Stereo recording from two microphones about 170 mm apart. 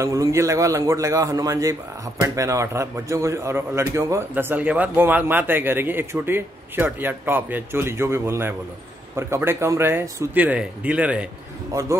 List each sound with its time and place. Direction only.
0.0 s a man's voice: 20° right (ahead or behind)